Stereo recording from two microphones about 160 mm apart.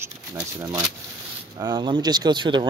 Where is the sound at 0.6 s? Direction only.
25° right (ahead or behind).